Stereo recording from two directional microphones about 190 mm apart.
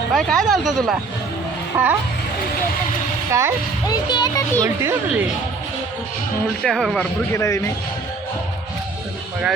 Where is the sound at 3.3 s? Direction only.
15° right (ahead or behind).